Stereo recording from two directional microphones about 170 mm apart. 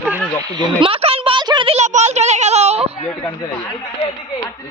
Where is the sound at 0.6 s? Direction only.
30° right (ahead or behind).